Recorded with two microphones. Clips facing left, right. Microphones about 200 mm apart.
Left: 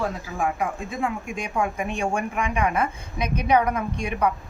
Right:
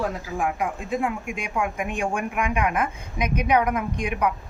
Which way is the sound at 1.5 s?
35° left (ahead or behind).